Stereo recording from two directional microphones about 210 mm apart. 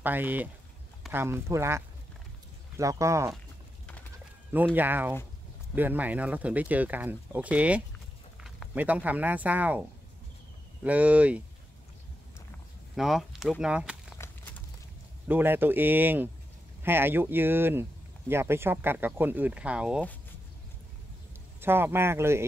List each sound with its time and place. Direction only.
0.0 s speech: 10° right (ahead or behind)
2.8 s speech: 15° right (ahead or behind)
4.5 s speech: 10° right (ahead or behind)
12.9 s speech: centre (ahead or behind)
14.1 s a sound: 15° left (ahead or behind)
15.2 s speech: 10° right (ahead or behind)
21.5 s speech: 10° right (ahead or behind)